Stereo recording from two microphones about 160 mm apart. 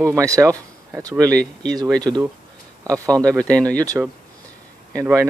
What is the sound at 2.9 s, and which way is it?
Speech, 20° right (ahead or behind).